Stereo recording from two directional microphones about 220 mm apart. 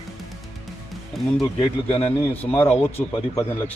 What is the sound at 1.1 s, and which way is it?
Speech, centre (ahead or behind).